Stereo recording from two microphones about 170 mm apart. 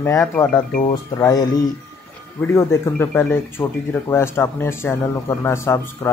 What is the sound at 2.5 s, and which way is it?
Speech, 15° left (ahead or behind).